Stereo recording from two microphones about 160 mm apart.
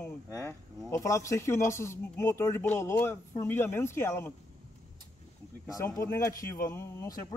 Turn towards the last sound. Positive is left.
turn(degrees=20)  # may be behind; listen again after turning